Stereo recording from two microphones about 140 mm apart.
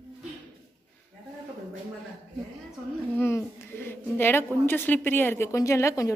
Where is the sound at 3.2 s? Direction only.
15° left (ahead or behind).